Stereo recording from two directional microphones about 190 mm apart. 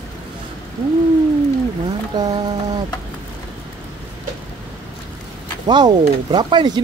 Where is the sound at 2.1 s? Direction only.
25° right (ahead or behind).